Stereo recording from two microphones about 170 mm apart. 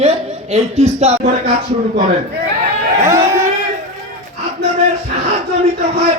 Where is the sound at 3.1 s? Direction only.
15° right (ahead or behind).